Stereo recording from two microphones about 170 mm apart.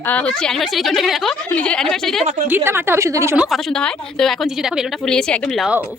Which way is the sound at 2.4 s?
10° right (ahead or behind).